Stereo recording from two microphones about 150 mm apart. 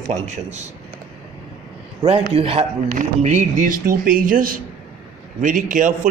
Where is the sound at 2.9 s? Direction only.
50° right (ahead or behind).